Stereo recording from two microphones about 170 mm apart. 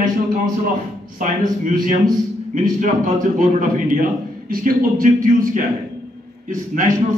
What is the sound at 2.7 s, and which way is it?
A man's voice, 45° right (ahead or behind).